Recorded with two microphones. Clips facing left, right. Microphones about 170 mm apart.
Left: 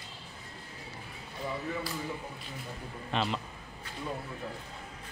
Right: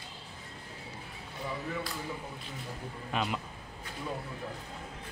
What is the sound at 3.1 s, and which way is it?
Music, 5° right (ahead or behind).